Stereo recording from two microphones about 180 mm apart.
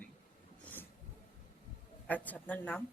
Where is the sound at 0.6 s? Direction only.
10° left (ahead or behind).